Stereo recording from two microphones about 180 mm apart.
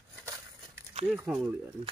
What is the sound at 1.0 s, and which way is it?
Speech, 5° right (ahead or behind).